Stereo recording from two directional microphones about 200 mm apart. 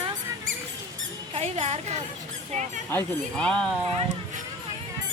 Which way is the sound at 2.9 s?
5° left (ahead or behind).